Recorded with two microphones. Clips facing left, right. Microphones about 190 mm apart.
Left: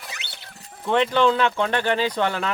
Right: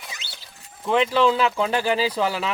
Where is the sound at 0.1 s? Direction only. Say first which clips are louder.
Left 1 dB; 65° left (ahead or behind).